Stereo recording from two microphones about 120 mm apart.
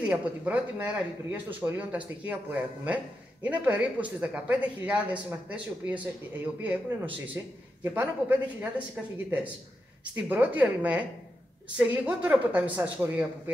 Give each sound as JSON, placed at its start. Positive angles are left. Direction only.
{"t": 0.0, "sound": "a man's voice", "side_deg": -10}